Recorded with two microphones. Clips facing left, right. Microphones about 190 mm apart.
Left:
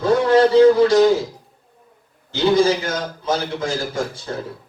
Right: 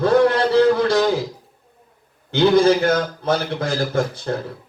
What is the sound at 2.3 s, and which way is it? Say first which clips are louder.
A man's voice: right 2 dB; 60° right (ahead or behind).